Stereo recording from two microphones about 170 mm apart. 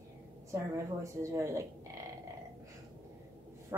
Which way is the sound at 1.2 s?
15° right (ahead or behind).